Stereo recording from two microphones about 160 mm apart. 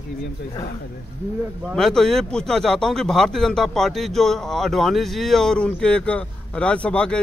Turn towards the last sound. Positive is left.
turn(degrees=5)  # may be behind; listen again after turning